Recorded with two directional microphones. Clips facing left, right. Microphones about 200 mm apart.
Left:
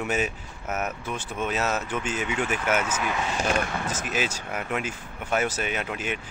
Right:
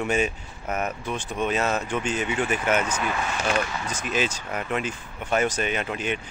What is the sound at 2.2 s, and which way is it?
Speech, 5° right (ahead or behind).